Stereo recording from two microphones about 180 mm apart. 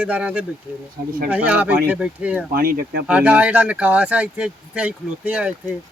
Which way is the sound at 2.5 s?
55° right (ahead or behind).